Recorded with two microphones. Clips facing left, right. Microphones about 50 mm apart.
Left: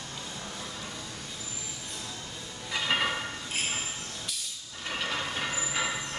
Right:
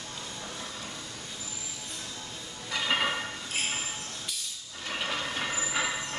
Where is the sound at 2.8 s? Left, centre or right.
Centre.